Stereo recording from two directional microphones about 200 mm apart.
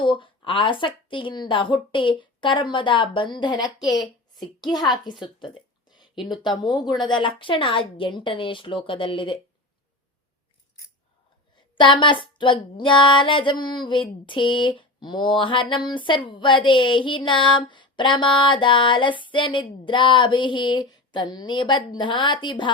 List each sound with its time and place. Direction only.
0.0 s a woman's voice: 25° left (ahead or behind)
5.0 s a sound: 25° left (ahead or behind)
6.4 s speech: 20° left (ahead or behind)
11.8 s speech: 25° left (ahead or behind)